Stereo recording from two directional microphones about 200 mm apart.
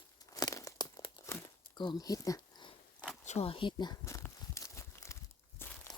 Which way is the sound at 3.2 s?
30° left (ahead or behind).